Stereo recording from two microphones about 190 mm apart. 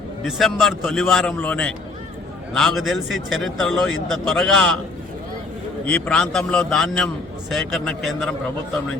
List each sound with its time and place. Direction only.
0.3 s speech: centre (ahead or behind)
5.8 s speech: 5° left (ahead or behind)